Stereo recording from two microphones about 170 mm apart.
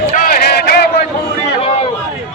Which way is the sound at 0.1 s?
60° left (ahead or behind).